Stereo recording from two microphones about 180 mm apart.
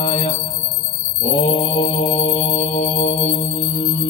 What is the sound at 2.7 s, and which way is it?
Mantra, 45° left (ahead or behind).